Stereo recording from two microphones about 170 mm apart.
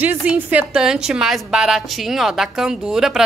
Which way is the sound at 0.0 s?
10° right (ahead or behind).